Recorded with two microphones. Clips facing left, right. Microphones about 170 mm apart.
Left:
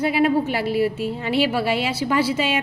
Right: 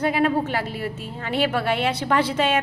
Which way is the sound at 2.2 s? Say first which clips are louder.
Left 3 dB; 5° left (ahead or behind).